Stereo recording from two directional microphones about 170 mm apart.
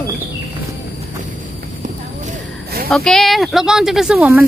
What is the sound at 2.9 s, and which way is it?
Speech, centre (ahead or behind).